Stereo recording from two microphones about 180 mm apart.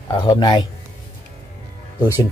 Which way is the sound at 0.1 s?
20° left (ahead or behind).